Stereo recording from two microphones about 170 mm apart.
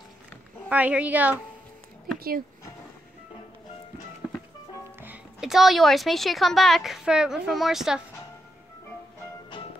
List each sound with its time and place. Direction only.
0.7 s speech: 10° right (ahead or behind)
2.1 s speech: 60° right (ahead or behind)
5.0 s a woman's voice: 5° right (ahead or behind)